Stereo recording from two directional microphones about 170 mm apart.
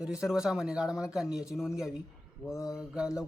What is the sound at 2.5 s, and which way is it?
Mantra, 15° left (ahead or behind).